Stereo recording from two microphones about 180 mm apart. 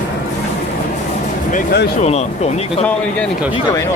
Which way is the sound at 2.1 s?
35° left (ahead or behind).